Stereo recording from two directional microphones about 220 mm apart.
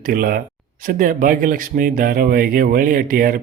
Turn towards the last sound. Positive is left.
turn(degrees=-40)  # may be behind; listen again after turning